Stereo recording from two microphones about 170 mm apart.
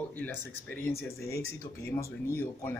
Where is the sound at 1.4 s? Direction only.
15° left (ahead or behind).